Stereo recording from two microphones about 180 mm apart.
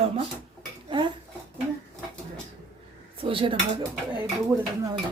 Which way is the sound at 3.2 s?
30° right (ahead or behind).